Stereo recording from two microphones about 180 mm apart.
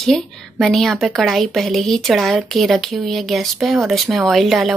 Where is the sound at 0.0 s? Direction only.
Centre (ahead or behind).